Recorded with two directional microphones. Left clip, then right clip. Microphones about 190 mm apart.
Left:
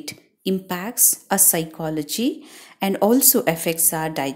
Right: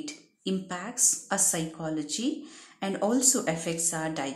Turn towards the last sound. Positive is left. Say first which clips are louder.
# left 7 dB
turn(degrees=35)  # may be behind; listen again after turning